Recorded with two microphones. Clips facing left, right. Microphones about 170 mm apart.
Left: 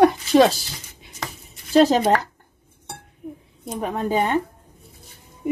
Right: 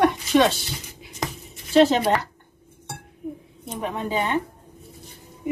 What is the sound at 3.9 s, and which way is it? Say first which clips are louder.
Speech: left 4 dB; 45° left (ahead or behind).